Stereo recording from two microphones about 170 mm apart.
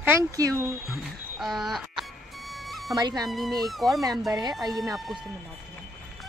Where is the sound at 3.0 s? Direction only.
25° right (ahead or behind).